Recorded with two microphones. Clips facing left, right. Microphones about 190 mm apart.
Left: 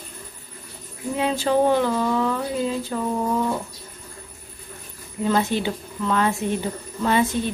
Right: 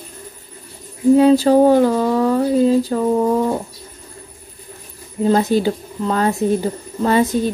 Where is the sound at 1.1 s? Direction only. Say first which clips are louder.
Right 9 dB; 40° right (ahead or behind).